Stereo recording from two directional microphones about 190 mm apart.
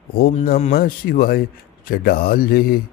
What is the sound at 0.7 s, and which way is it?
Speech, 50° left (ahead or behind).